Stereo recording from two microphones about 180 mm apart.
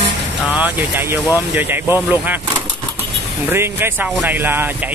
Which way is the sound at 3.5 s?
15° right (ahead or behind).